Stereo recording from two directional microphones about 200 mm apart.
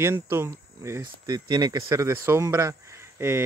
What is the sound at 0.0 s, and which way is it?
Speech, 10° right (ahead or behind).